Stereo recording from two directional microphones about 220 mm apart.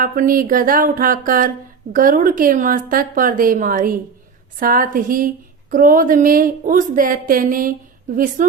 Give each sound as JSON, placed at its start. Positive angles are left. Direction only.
{"t": 0.0, "sound": "speech", "side_deg": -40}